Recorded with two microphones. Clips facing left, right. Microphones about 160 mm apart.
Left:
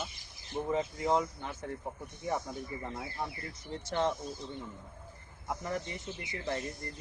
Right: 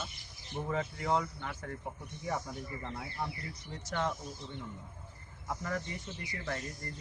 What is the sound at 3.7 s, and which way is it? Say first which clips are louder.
Speech: left 4 dB; 30° left (ahead or behind).